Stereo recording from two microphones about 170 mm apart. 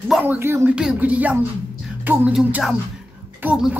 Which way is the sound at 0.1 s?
10° right (ahead or behind).